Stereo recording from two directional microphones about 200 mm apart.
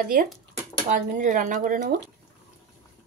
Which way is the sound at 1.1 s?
40° right (ahead or behind).